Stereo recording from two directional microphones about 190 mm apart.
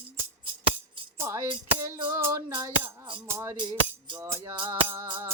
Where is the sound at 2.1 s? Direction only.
15° right (ahead or behind).